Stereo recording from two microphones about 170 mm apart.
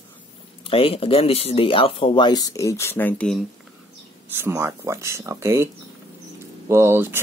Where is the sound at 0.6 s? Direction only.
35° left (ahead or behind); by 3.4 s 5° left (ahead or behind).